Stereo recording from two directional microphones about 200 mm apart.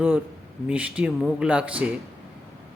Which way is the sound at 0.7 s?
5° right (ahead or behind).